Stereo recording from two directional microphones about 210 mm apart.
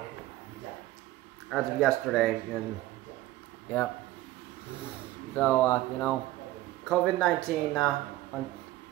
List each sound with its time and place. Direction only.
1.5 s speech: centre (ahead or behind)
5.3 s speech: 10° left (ahead or behind)